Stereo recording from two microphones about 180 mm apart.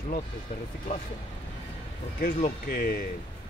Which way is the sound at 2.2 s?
50° left (ahead or behind).